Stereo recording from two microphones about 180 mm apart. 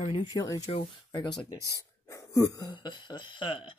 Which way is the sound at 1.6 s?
15° right (ahead or behind).